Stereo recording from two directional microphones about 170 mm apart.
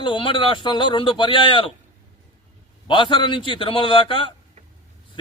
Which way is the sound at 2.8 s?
30° left (ahead or behind).